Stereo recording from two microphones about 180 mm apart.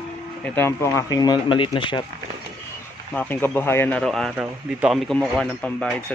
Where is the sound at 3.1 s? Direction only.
10° left (ahead or behind).